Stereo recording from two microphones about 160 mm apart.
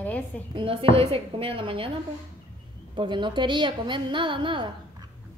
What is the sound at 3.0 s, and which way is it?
A woman's voice, 30° right (ahead or behind).